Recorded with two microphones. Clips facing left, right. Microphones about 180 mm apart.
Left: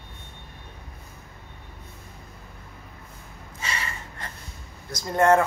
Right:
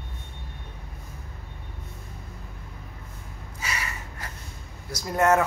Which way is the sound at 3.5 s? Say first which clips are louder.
Left 1 dB; 10° right (ahead or behind).